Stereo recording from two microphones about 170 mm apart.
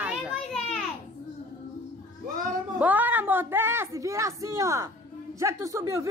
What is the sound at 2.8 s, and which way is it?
A woman's voice, 10° right (ahead or behind).